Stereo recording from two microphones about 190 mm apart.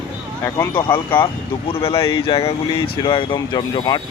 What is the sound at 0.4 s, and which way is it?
Speech, 10° left (ahead or behind).